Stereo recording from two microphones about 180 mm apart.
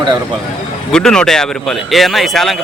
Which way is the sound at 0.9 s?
5° left (ahead or behind).